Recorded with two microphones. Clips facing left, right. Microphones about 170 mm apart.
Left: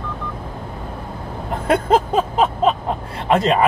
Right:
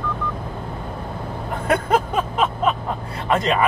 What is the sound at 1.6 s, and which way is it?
Vehicle, 30° left (ahead or behind).